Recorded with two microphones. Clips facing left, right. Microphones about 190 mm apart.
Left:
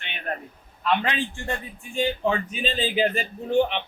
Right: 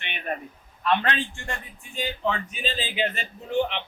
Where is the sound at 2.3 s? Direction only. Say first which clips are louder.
Left 3 dB; 35° left (ahead or behind).